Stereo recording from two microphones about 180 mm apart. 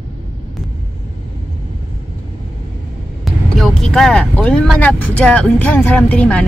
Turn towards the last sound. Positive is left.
turn(degrees=5)  # may be behind; listen again after turning